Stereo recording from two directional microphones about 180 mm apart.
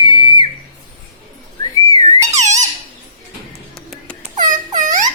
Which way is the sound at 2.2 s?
40° right (ahead or behind).